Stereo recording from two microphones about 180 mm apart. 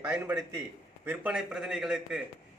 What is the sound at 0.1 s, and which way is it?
A man's voice, 15° right (ahead or behind).